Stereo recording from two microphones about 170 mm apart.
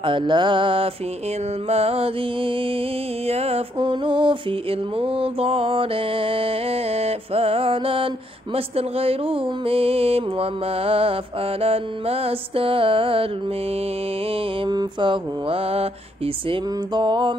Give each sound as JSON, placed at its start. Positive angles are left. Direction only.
{"t": 0.0, "sound": "music", "side_deg": -30}
{"t": 14.3, "sound": "music", "side_deg": -30}